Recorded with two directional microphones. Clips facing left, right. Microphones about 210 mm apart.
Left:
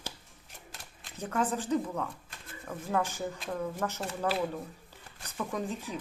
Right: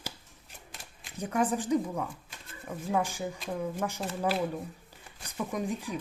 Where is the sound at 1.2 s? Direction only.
15° right (ahead or behind).